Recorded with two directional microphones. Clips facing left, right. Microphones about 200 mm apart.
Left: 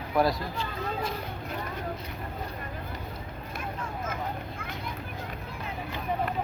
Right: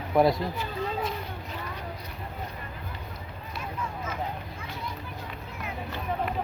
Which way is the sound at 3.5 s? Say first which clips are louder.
Right 1 dB; 50° left (ahead or behind).